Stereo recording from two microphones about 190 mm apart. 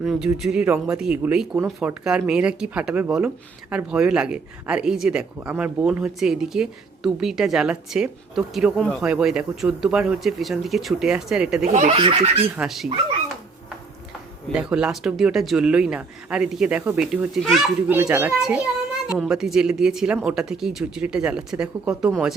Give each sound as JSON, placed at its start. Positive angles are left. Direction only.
{"t": 0.0, "sound": "speech", "side_deg": 0}
{"t": 11.7, "sound": "speech", "side_deg": -35}
{"t": 12.5, "sound": "speech", "side_deg": 0}
{"t": 14.5, "sound": "a child's voice", "side_deg": -5}